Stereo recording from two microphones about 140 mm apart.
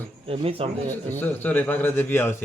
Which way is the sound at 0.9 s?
15° left (ahead or behind).